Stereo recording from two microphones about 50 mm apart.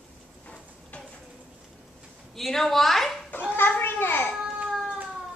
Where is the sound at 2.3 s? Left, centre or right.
Centre.